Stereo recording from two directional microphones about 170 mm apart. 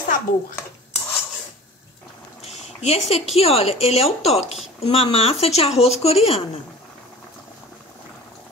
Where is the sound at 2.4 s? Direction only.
40° left (ahead or behind).